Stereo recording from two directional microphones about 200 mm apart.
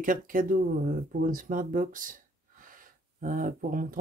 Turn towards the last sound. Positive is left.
turn(degrees=-45)  # may be behind; listen again after turning